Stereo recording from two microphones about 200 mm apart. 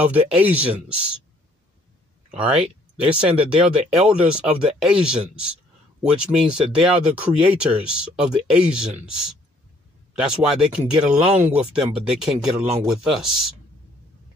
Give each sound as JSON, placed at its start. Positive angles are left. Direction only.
{"t": 0.1, "sound": "speech", "side_deg": -10}
{"t": 2.3, "sound": "speech", "side_deg": -5}
{"t": 10.2, "sound": "speech", "side_deg": -5}
{"t": 11.2, "sound": "speech", "side_deg": -30}
{"t": 11.6, "sound": "speech", "side_deg": -5}